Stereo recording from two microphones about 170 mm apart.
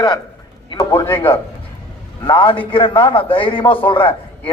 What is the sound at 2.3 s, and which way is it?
A man's voice, 30° left (ahead or behind).